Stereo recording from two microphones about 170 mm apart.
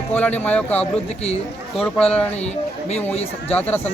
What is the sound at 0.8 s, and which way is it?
Speech, 40° left (ahead or behind).